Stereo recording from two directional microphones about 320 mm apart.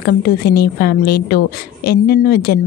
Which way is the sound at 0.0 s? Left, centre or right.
Left.